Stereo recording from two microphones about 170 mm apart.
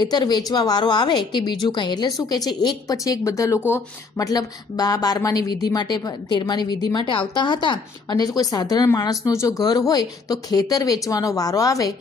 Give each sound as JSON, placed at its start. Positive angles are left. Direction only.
{"t": 0.0, "sound": "a woman's voice", "side_deg": 25}